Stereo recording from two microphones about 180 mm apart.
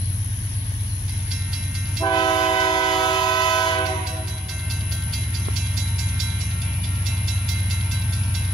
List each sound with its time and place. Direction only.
2.0 s train: 25° left (ahead or behind)